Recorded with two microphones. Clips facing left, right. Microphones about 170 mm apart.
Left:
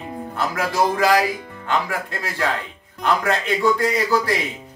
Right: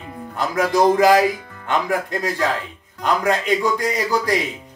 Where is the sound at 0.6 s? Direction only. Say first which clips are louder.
Right 5 dB; 20° right (ahead or behind).